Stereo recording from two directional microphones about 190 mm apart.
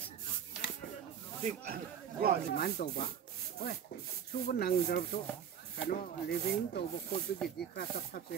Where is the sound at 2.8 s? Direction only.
45° left (ahead or behind).